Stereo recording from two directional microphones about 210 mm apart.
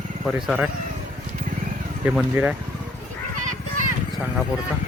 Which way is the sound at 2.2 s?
5° right (ahead or behind).